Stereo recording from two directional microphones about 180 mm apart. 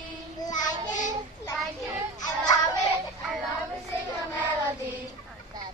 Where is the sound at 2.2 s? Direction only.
20° left (ahead or behind).